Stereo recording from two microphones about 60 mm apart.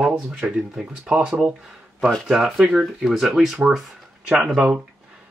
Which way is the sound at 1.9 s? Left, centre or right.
Centre.